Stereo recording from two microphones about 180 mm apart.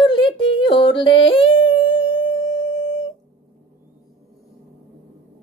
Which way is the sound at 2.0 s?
25° left (ahead or behind).